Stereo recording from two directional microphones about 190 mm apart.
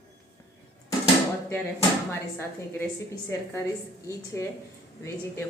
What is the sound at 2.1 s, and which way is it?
Speech, 10° left (ahead or behind).